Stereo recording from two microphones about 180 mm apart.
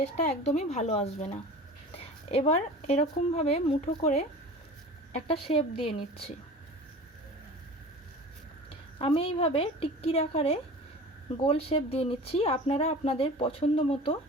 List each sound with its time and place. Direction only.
0.0 s a woman's voice: 40° left (ahead or behind)
9.0 s speech: 30° left (ahead or behind)